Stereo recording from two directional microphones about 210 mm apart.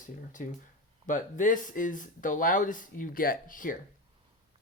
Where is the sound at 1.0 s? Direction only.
40° left (ahead or behind).